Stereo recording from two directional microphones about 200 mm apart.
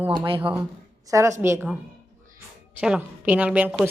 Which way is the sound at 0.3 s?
25° right (ahead or behind).